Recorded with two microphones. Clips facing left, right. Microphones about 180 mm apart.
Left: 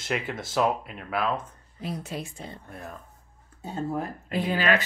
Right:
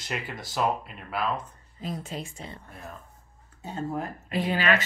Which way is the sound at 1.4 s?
65° left (ahead or behind).